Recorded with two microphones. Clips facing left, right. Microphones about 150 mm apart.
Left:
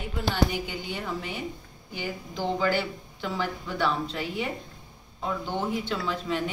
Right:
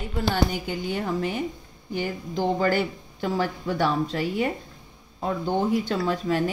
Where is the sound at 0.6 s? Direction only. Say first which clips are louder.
Right 6 dB; 45° right (ahead or behind).